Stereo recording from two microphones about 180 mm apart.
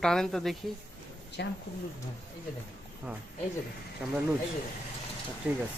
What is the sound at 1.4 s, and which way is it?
Speech, 70° left (ahead or behind).